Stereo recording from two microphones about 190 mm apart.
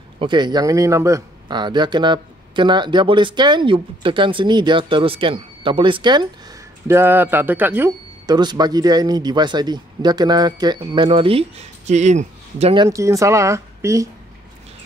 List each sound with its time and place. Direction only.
0.2 s speech: 25° right (ahead or behind)
6.9 s speech: 10° right (ahead or behind)
8.4 s speech: 20° right (ahead or behind)
12.8 s speech: 15° right (ahead or behind)